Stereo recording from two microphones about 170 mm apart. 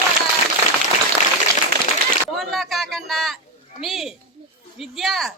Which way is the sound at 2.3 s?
Centre (ahead or behind).